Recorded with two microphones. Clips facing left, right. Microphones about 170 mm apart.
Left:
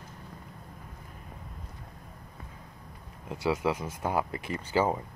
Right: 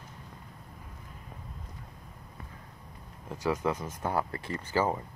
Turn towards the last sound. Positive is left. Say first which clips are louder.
# left 2 dB
turn(degrees=15)  # may be behind; listen again after turning